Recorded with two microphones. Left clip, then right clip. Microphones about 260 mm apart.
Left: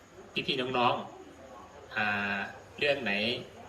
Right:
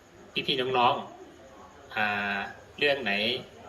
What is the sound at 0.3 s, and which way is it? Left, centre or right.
Speech, centre.